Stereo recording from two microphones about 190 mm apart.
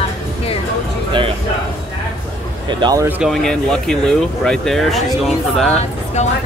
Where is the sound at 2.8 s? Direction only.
20° right (ahead or behind).